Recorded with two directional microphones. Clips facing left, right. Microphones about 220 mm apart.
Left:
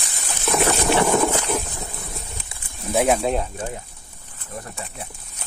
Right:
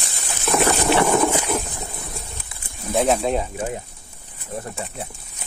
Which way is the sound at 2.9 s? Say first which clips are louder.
Even; 10° left (ahead or behind).